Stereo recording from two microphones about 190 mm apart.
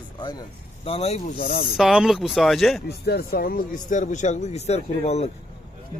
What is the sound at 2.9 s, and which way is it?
Speech, 55° left (ahead or behind).